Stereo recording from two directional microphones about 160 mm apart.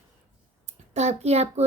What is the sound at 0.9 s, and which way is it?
Speech, 45° right (ahead or behind).